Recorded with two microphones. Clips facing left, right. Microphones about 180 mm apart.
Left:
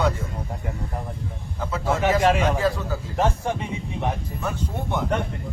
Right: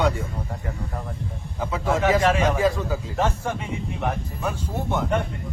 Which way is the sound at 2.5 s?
15° right (ahead or behind).